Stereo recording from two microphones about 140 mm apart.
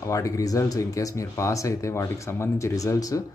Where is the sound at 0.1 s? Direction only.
25° left (ahead or behind).